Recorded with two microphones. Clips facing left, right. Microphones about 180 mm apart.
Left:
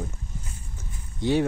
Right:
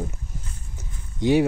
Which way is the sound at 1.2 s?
15° right (ahead or behind).